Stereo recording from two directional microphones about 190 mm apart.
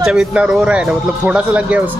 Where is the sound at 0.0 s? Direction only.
5° right (ahead or behind).